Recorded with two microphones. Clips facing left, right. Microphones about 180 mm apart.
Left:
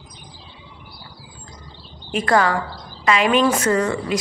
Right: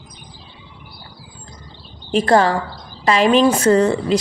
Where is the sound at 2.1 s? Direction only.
30° right (ahead or behind).